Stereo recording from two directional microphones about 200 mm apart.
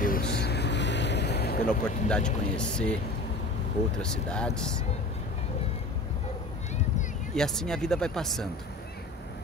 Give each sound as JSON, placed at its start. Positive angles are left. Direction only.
{"t": 0.0, "sound": "boat", "side_deg": 50}
{"t": 2.0, "sound": "speech", "side_deg": 5}
{"t": 4.0, "sound": "speech", "side_deg": 5}
{"t": 7.3, "sound": "speech", "side_deg": 5}